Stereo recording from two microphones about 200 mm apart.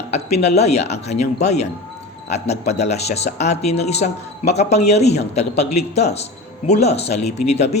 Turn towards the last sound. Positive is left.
turn(degrees=35)  # may be behind; listen again after turning